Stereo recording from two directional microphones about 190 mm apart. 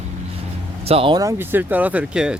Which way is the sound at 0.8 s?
30° right (ahead or behind).